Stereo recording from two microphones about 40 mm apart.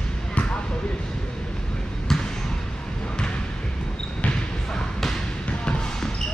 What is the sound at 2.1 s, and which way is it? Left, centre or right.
Basketball bounce, centre.